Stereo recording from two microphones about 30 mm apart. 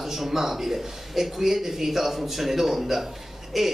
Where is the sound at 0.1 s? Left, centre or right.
Centre.